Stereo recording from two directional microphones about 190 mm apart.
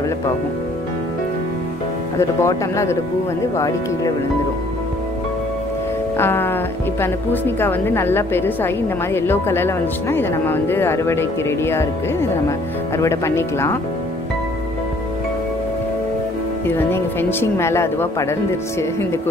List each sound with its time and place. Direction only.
2.1 s a woman's voice: 15° left (ahead or behind)
6.1 s a woman's voice: 10° left (ahead or behind)
16.6 s a woman's voice: 10° left (ahead or behind)